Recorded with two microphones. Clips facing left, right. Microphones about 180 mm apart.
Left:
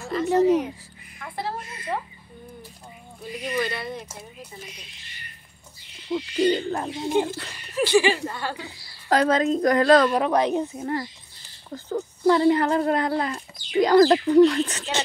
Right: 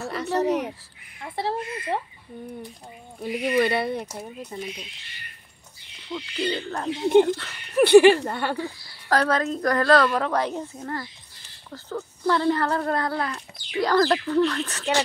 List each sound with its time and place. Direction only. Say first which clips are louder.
0.0 s speech: left 4 dB; 70° right (ahead or behind)
1.2 s speech: right 4 dB; 25° right (ahead or behind)
3.2 s speech: right 6 dB; 65° right (ahead or behind)
6.1 s speech: left 6 dB; 40° left (ahead or behind)
7.7 s speech: right 7 dB; 60° right (ahead or behind)
9.1 s speech: left 3 dB; 20° left (ahead or behind)